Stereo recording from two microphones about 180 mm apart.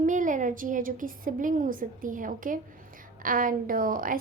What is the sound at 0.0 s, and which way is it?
A child's voice, 45° right (ahead or behind).